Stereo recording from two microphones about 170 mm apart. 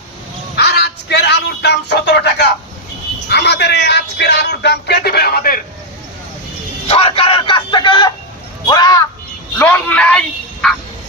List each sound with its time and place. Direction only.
0.5 s a man's voice: 75° left (ahead or behind)
3.2 s speech: 80° left; by 5.5 s 60° left (ahead or behind)
6.8 s a sound: 35° left (ahead or behind)
8.6 s speech: 25° left (ahead or behind)
9.6 s a man's voice: 10° left (ahead or behind)